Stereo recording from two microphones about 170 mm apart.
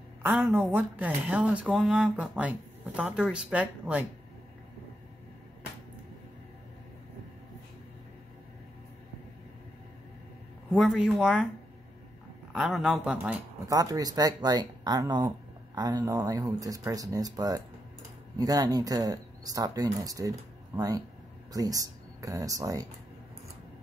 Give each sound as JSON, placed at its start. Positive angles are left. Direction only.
{"t": 0.2, "sound": "speech", "side_deg": -10}
{"t": 10.7, "sound": "speech", "side_deg": -5}
{"t": 12.5, "sound": "speech", "side_deg": -5}
{"t": 13.7, "sound": "speech", "side_deg": -20}